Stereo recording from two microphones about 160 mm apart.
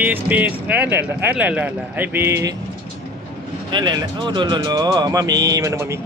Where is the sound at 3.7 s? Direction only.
30° right (ahead or behind).